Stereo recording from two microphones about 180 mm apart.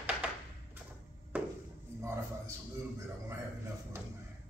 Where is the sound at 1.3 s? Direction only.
10° right (ahead or behind).